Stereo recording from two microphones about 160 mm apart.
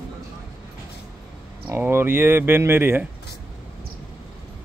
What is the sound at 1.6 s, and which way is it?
Speech, 15° right (ahead or behind).